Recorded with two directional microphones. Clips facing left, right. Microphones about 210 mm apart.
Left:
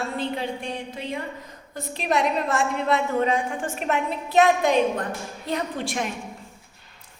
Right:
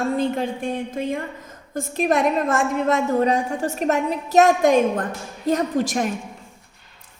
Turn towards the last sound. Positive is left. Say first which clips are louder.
# right 6 dB
turn(degrees=-45)  # may be behind; listen again after turning